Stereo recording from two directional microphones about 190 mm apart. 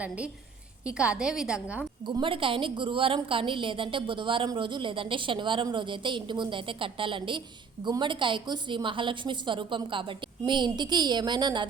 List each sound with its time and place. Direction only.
0.9 s a woman's voice: 5° right (ahead or behind)
2.0 s a woman's voice: 25° right (ahead or behind)